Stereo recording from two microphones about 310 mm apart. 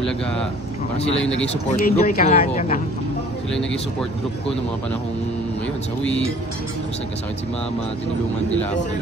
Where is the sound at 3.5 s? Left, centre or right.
Centre.